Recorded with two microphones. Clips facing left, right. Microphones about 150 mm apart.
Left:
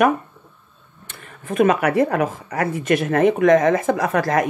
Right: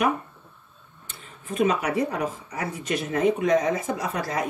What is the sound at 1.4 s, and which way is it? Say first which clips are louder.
A woman's voice: left 6 dB; 60° left (ahead or behind).